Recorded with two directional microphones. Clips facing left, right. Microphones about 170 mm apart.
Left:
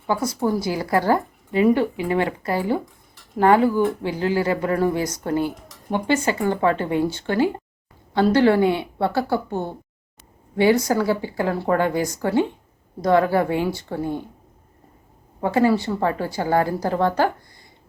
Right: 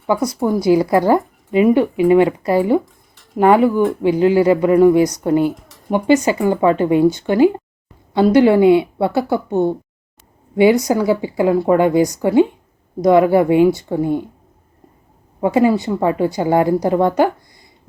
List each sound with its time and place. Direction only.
0.4 s speech: 20° right (ahead or behind)
15.4 s speech: 15° right (ahead or behind)